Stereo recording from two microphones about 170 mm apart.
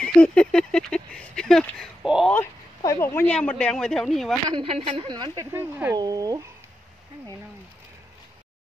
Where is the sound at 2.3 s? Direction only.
15° left (ahead or behind).